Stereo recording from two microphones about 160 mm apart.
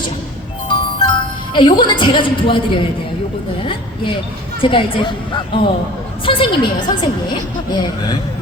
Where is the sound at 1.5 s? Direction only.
30° left (ahead or behind).